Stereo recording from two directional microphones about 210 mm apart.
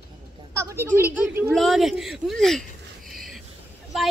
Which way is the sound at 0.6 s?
15° right (ahead or behind).